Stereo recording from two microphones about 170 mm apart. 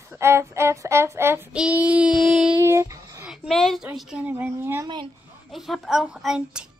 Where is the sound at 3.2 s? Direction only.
5° right (ahead or behind).